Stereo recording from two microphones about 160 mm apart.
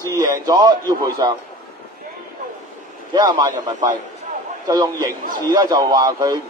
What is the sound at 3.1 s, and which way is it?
Speech, 25° right (ahead or behind).